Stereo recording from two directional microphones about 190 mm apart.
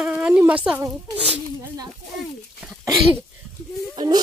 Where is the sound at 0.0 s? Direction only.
5° right (ahead or behind).